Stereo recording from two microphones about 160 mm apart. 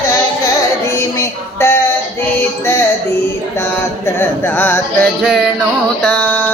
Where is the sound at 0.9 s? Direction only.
15° left (ahead or behind).